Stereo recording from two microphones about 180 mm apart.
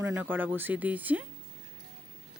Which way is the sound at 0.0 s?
15° right (ahead or behind).